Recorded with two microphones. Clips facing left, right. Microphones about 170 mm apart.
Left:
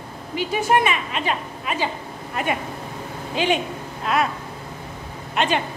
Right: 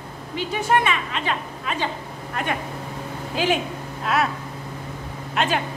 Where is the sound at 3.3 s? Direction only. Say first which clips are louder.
Left 1 dB; centre (ahead or behind).